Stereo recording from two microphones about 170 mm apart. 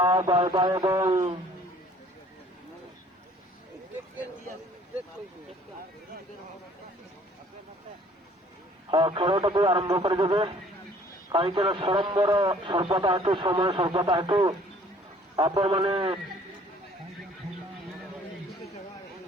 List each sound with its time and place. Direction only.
0.2 s a man's voice: 25° right (ahead or behind)
8.9 s a man's voice: 30° right (ahead or behind)